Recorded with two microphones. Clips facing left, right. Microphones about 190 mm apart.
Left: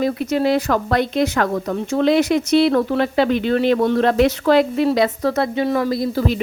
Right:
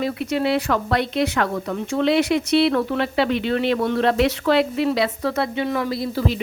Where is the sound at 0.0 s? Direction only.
40° left (ahead or behind).